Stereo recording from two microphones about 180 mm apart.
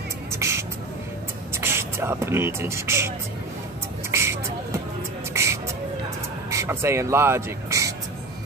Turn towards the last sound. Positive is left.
turn(degrees=-15)  # may be behind; listen again after turning